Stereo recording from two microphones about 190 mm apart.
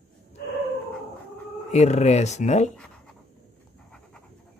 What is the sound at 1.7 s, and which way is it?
Speech, 35° left (ahead or behind).